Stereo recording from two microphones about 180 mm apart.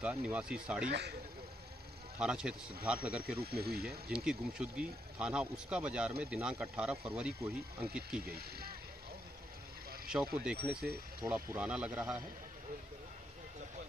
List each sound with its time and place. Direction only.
0.0 s speech: 5° right (ahead or behind)
0.8 s speech: 70° right (ahead or behind)
2.1 s speech: 5° right (ahead or behind)
3.4 s speech: 60° right (ahead or behind)
4.1 s speech: 5° right (ahead or behind)
8.3 s speech: 60° right (ahead or behind)
10.0 s speech: 5° right (ahead or behind)